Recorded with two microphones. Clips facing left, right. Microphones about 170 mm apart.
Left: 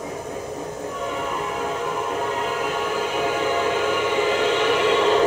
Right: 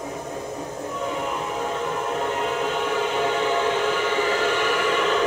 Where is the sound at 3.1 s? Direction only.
10° left (ahead or behind).